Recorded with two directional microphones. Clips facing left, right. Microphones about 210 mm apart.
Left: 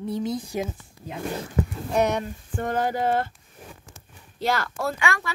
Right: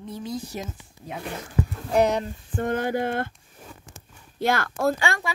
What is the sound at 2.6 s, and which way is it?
Speech, 55° right (ahead or behind).